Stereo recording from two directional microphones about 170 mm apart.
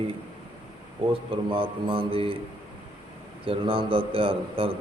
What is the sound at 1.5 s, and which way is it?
Speech, 30° right (ahead or behind).